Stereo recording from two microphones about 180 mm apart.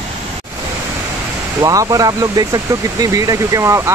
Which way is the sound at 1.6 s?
20° right (ahead or behind).